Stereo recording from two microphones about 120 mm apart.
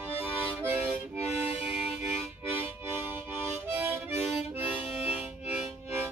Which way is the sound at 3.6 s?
20° right (ahead or behind).